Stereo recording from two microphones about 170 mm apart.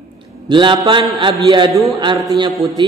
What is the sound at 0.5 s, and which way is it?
A man's voice, 30° right (ahead or behind).